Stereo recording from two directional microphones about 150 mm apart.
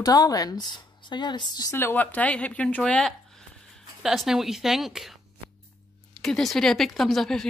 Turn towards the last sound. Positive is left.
turn(degrees=0)  # may be behind; listen again after turning